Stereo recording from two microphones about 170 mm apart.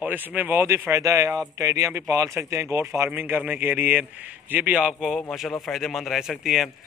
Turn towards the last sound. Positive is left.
turn(degrees=0)  # may be behind; listen again after turning